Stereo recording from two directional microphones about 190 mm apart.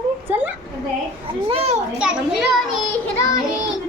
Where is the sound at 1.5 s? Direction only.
35° right (ahead or behind).